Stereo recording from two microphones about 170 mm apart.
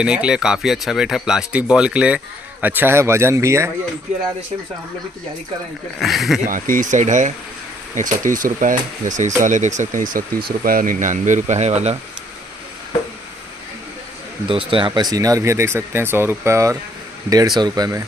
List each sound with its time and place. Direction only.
0.0 s speech: 5° right (ahead or behind)
5.9 s speech: centre (ahead or behind)
6.4 s speech: 50° right (ahead or behind)
14.5 s speech: 30° right (ahead or behind)